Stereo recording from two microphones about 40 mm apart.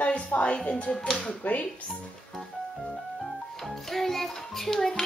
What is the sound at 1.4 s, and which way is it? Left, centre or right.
Speech, left.